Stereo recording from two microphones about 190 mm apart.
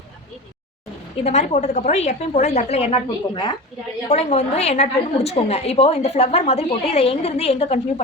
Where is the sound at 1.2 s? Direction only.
35° left (ahead or behind).